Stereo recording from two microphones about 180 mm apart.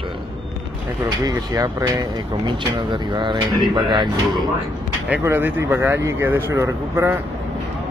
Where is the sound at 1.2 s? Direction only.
20° right (ahead or behind).